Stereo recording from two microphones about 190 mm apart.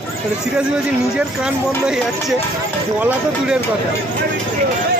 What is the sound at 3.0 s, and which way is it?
Speech, 10° right (ahead or behind).